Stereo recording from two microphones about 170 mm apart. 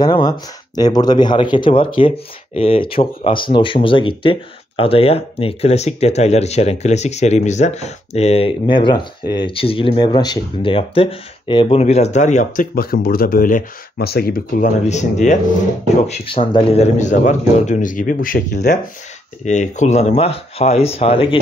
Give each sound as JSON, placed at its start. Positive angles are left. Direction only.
{"t": 0.0, "sound": "speech", "side_deg": 25}
{"t": 12.7, "sound": "speech", "side_deg": 60}
{"t": 16.1, "sound": "a man's voice", "side_deg": 30}
{"t": 19.4, "sound": "speech", "side_deg": 45}